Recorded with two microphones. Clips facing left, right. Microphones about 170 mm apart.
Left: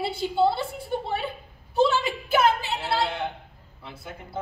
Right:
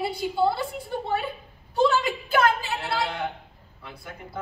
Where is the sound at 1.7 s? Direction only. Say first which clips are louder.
Even; 25° left (ahead or behind).